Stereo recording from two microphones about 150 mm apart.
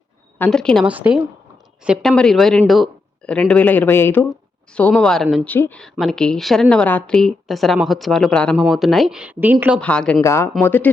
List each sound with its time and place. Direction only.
0.3 s a woman's voice: 10° left (ahead or behind)
0.9 s a woman's voice: 10° right (ahead or behind)
5.5 s speech: 15° left (ahead or behind)
5.8 s a woman's voice: centre (ahead or behind)
9.8 s speech: 5° left (ahead or behind)
10.2 s speech: 20° left (ahead or behind)